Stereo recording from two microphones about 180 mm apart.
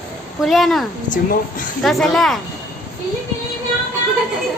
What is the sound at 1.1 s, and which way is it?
Speech, 50° left (ahead or behind).